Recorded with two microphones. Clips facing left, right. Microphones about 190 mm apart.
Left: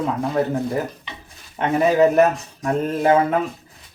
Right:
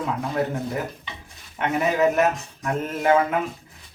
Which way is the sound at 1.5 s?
35° left (ahead or behind).